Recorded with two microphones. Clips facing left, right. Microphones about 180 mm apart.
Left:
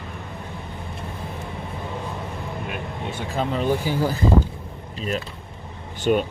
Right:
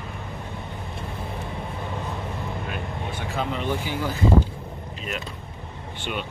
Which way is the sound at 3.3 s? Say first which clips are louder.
Left 5 dB; 40° left (ahead or behind).